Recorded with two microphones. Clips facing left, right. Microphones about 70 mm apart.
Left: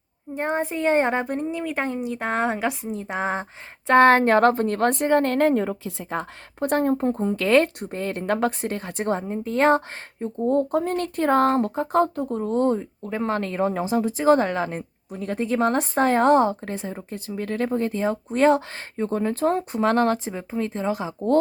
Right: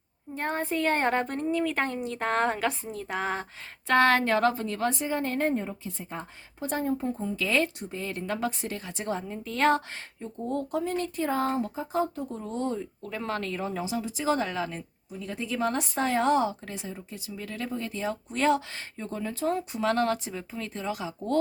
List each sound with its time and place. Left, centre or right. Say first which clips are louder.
0.3 s a woman's voice: left 4 dB; centre